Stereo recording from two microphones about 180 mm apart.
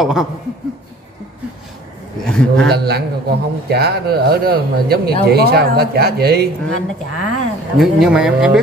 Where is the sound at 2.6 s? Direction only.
60° right (ahead or behind).